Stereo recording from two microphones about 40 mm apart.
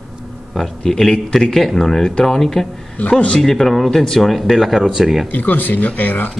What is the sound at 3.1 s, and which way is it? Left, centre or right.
Speech, left.